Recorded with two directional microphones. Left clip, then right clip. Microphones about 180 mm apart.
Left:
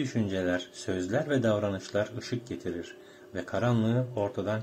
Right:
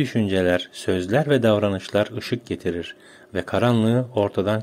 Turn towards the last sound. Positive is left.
turn(degrees=-50)  # may be behind; listen again after turning